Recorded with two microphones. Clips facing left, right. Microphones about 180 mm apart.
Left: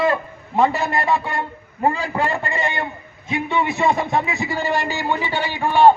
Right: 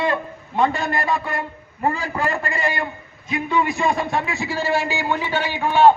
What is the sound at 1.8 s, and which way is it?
A man's voice, 25° left (ahead or behind).